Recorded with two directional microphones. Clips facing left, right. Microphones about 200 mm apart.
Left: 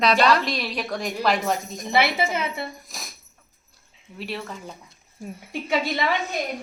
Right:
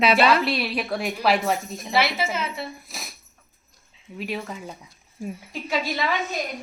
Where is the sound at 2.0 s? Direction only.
60° left (ahead or behind).